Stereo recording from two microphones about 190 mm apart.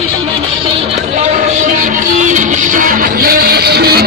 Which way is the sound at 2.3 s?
40° right (ahead or behind).